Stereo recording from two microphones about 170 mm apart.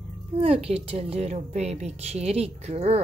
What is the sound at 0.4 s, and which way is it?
A woman's voice, 35° right (ahead or behind).